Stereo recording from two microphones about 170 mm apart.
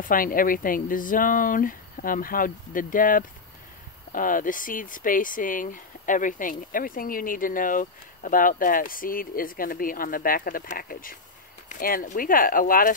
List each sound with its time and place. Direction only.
0.0 s speech: 55° left (ahead or behind)